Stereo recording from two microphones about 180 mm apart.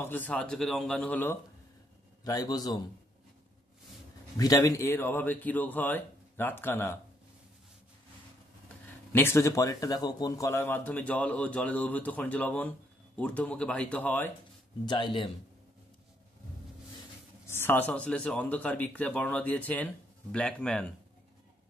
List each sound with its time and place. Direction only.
0.0 s speech: 10° left (ahead or behind)
2.2 s a man's voice: 20° left (ahead or behind)
4.4 s speech: 20° left (ahead or behind)
9.1 s speech: 15° left (ahead or behind)
14.9 s a man's voice: 25° left (ahead or behind)
17.5 s speech: 10° left (ahead or behind)